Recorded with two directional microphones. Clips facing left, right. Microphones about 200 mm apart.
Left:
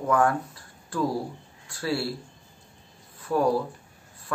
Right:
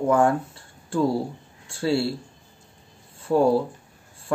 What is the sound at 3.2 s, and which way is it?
Speech, 25° right (ahead or behind).